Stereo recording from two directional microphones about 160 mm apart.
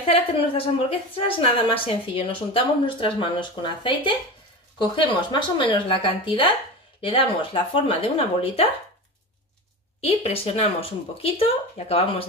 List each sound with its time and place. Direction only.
0.1 s a woman's voice: 35° left (ahead or behind)
9.9 s a woman's voice: 40° left (ahead or behind)